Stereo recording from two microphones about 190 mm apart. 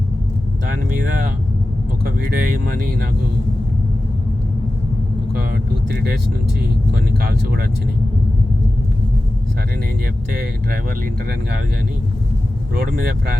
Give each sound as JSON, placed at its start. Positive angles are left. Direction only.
{"t": 2.0, "sound": "speech", "side_deg": -50}
{"t": 6.9, "sound": "speech", "side_deg": -55}